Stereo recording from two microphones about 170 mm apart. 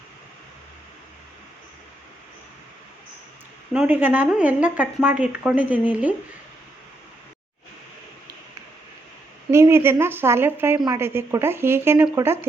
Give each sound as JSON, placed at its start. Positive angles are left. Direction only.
{"t": 3.7, "sound": "speech", "side_deg": -5}
{"t": 9.5, "sound": "speech", "side_deg": -15}
{"t": 10.8, "sound": "speech", "side_deg": -25}
{"t": 11.0, "sound": "speech", "side_deg": -15}